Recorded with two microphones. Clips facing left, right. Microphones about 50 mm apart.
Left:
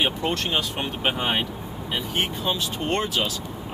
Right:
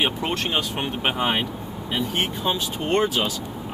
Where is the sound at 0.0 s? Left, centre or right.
Centre.